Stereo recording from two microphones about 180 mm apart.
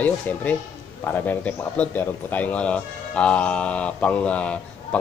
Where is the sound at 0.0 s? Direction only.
10° left (ahead or behind).